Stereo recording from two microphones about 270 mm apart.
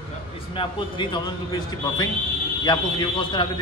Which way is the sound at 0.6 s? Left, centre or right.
Centre.